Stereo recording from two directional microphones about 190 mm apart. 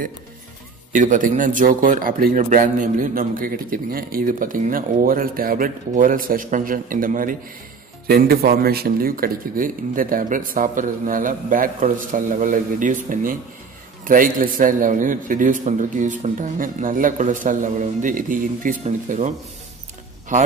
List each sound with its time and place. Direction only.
0.9 s a man's voice: 45° right (ahead or behind)